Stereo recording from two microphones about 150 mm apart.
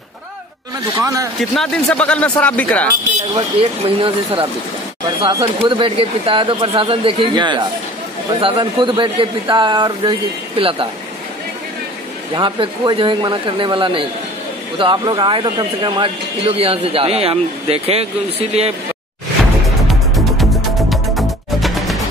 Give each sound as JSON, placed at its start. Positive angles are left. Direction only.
{"t": 1.0, "sound": "a man's voice", "side_deg": -20}
{"t": 1.4, "sound": "speech", "side_deg": 5}
{"t": 3.3, "sound": "speech", "side_deg": -35}
{"t": 12.4, "sound": "speech", "side_deg": -30}
{"t": 19.9, "sound": "music", "side_deg": 0}